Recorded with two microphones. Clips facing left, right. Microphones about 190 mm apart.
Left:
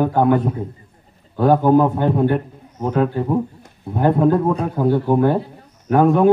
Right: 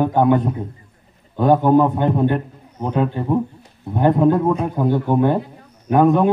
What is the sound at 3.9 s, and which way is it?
A man's voice, centre (ahead or behind).